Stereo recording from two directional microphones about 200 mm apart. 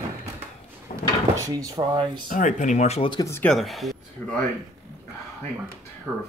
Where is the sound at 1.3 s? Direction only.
15° right (ahead or behind).